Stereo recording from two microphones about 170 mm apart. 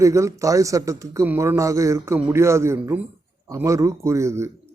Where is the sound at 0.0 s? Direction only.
20° right (ahead or behind).